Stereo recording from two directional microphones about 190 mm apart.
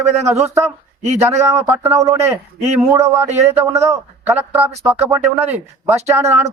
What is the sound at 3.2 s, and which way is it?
Speech, 35° right (ahead or behind).